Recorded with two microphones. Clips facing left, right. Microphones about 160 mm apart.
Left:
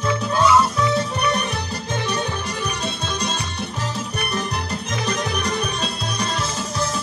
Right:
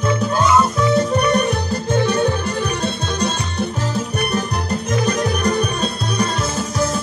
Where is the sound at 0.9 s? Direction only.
50° right (ahead or behind).